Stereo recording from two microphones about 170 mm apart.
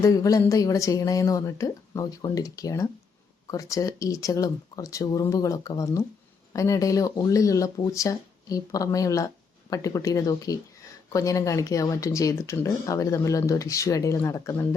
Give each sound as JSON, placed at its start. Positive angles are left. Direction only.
{"t": 0.0, "sound": "speech", "side_deg": 20}